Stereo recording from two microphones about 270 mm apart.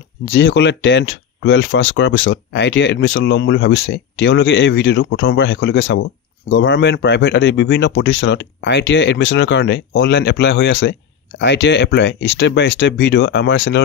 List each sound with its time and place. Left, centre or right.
0.2 s speech: left